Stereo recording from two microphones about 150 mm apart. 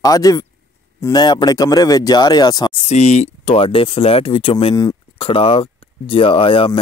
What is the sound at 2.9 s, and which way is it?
Speech, 50° left (ahead or behind).